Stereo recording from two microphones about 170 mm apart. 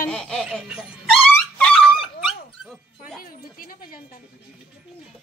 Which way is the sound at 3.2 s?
55° left (ahead or behind).